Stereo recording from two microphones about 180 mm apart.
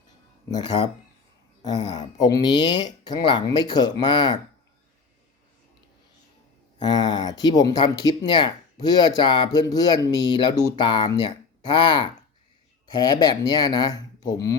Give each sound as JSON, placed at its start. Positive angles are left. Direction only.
{"t": 0.5, "sound": "speech", "side_deg": 25}
{"t": 6.8, "sound": "speech", "side_deg": 25}